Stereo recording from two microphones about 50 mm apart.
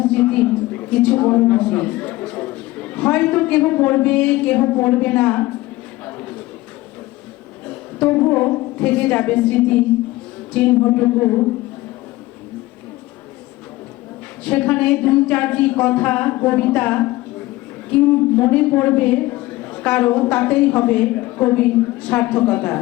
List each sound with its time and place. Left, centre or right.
0.0 s a woman's voice: left
6.1 s a sound: left
7.7 s music: left
8.3 s a man's voice: left
10.8 s speech: left
14.4 s a man's voice: left